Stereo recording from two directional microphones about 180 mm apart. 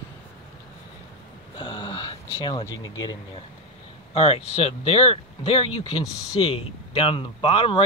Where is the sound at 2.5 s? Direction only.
25° left (ahead or behind).